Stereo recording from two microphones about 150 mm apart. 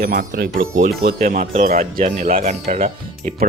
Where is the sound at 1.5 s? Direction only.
50° right (ahead or behind).